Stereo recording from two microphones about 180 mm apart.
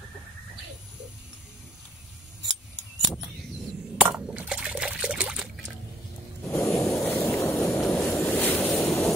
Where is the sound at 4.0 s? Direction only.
5° right (ahead or behind).